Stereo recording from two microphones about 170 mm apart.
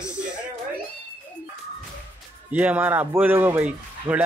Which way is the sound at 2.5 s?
10° right (ahead or behind).